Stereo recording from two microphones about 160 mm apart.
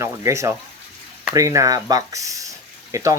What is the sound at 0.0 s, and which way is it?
Speech, 20° right (ahead or behind).